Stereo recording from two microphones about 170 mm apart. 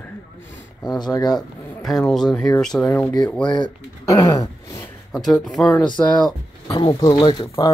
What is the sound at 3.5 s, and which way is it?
Speech, 25° left (ahead or behind).